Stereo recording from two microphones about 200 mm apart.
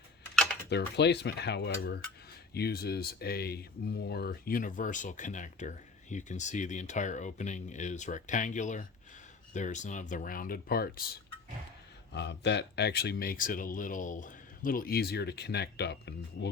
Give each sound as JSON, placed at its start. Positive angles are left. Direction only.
{"t": 0.7, "sound": "cutlery", "side_deg": 55}
{"t": 2.5, "sound": "speech", "side_deg": 55}
{"t": 12.1, "sound": "speech", "side_deg": 60}